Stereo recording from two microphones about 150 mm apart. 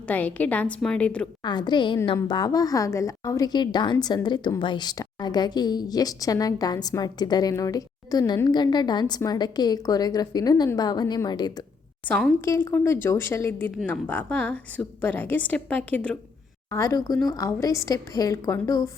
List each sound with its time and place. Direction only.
0.1 s speech: 10° left (ahead or behind)
1.4 s a woman's voice: 30° left (ahead or behind)
12.0 s a woman's voice: 5° left (ahead or behind)
12.4 s speech: 20° left (ahead or behind)
16.6 s a woman's voice: 20° left (ahead or behind)